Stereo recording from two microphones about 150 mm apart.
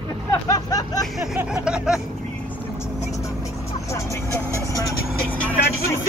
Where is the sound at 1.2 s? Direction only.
5° right (ahead or behind).